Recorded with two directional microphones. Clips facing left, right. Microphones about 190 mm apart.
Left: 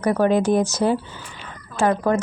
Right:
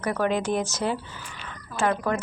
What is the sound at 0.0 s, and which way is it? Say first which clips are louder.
A woman's voice: left 7 dB; 35° left (ahead or behind).